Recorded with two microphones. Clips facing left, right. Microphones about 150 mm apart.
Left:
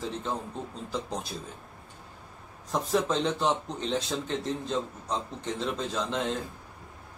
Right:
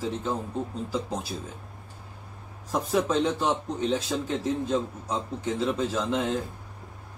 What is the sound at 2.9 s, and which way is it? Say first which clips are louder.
A man's voice: right 3 dB; 5° right (ahead or behind).